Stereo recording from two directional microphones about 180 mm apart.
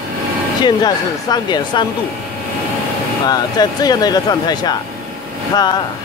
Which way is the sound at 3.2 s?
20° left (ahead or behind).